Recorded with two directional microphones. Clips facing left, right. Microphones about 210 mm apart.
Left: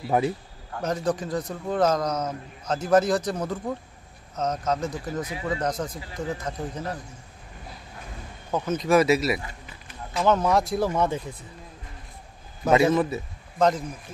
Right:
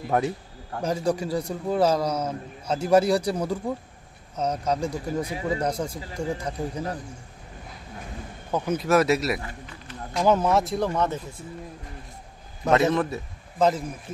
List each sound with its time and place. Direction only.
0.1 s speech: centre (ahead or behind)
0.8 s a man's voice: 10° right (ahead or behind)
8.5 s speech: 10° right (ahead or behind); by 11.1 s 10° left (ahead or behind)
12.6 s a man's voice: centre (ahead or behind)